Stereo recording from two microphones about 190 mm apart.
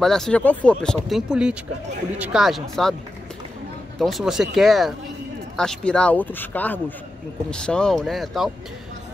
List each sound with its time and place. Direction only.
0.0 s speech: centre (ahead or behind)
4.0 s speech: centre (ahead or behind)